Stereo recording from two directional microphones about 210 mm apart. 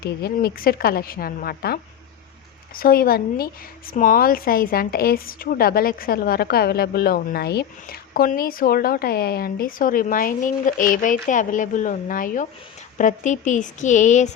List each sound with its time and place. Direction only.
0.0 s a woman's voice: 50° left (ahead or behind)